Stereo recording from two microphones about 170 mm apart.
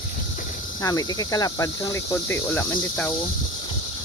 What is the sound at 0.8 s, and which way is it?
Speech, 20° left (ahead or behind).